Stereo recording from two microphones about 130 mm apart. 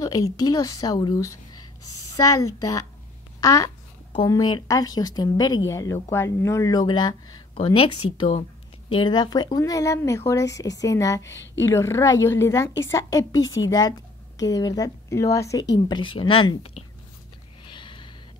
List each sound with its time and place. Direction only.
0.0 s a woman's voice: 30° left (ahead or behind)
7.5 s speech: 45° left (ahead or behind); by 16.0 s 25° left (ahead or behind)
16.0 s speech: 40° left (ahead or behind)
17.6 s snort: 40° left (ahead or behind)